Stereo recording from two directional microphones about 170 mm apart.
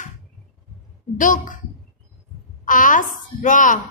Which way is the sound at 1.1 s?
50° left (ahead or behind).